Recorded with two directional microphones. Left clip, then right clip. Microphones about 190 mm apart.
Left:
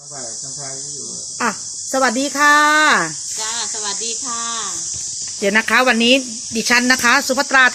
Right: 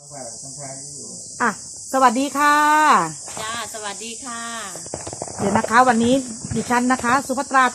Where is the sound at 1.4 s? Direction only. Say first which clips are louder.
Even; 10° left (ahead or behind).